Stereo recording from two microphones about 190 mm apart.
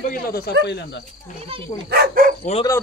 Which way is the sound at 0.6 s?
60° left (ahead or behind).